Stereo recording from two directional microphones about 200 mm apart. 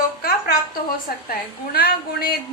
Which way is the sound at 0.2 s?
50° left (ahead or behind).